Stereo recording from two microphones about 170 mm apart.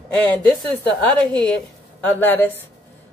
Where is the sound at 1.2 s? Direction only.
5° left (ahead or behind).